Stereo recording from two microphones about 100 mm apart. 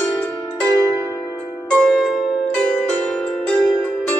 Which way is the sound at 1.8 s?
Centre (ahead or behind).